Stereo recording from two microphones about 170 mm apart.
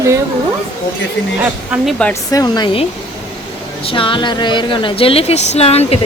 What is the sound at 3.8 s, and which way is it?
Speech, 30° left (ahead or behind).